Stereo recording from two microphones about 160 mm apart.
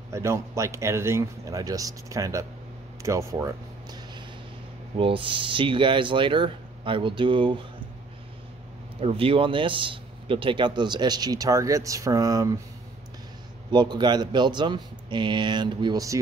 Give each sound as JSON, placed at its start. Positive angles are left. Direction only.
{"t": 0.1, "sound": "speech", "side_deg": -15}
{"t": 4.9, "sound": "speech", "side_deg": -35}
{"t": 9.0, "sound": "speech", "side_deg": -35}
{"t": 13.7, "sound": "speech", "side_deg": -25}